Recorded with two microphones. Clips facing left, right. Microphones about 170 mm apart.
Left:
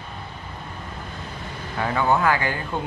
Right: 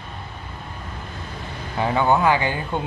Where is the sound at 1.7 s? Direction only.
20° right (ahead or behind).